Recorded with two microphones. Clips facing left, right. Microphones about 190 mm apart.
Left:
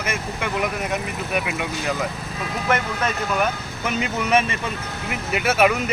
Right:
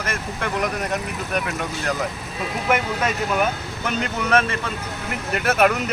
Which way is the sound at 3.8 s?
10° left (ahead or behind).